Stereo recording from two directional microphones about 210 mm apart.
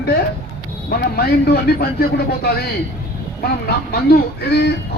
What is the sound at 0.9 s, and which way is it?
Speech, 50° left (ahead or behind).